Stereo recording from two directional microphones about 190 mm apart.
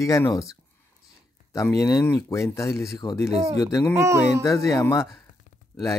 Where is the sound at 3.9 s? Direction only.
15° right (ahead or behind).